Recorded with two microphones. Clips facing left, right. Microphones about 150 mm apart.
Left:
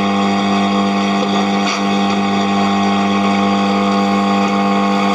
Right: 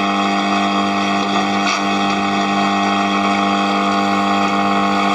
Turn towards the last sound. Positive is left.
turn(degrees=40)  # may be behind; listen again after turning